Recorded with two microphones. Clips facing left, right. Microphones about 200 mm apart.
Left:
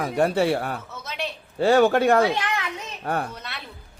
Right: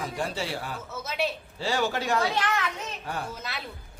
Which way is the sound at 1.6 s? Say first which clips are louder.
Left 11 dB; 55° left (ahead or behind).